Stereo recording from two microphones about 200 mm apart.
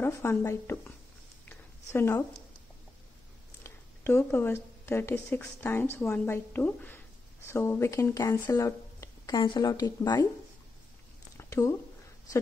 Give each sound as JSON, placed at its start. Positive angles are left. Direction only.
{"t": 0.0, "sound": "speech", "side_deg": 10}
{"t": 3.6, "sound": "speech", "side_deg": 10}
{"t": 11.3, "sound": "a sound", "side_deg": 15}